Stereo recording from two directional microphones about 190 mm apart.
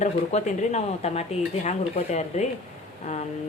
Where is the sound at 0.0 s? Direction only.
35° left (ahead or behind).